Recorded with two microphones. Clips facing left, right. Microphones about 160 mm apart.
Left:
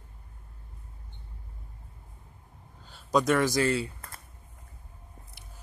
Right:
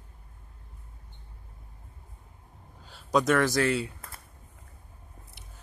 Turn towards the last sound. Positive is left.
turn(degrees=0)  # may be behind; listen again after turning